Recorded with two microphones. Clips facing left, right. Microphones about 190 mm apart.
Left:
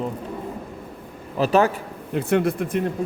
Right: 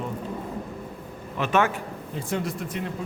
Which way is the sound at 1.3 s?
35° left (ahead or behind).